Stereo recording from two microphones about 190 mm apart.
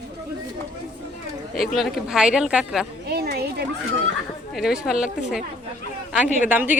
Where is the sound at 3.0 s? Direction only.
55° right (ahead or behind).